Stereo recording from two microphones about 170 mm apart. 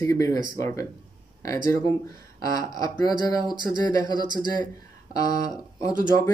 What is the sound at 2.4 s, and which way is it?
Speech, 20° left (ahead or behind).